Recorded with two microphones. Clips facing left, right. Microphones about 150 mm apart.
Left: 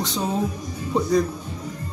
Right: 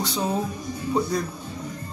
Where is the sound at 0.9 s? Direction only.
Centre (ahead or behind).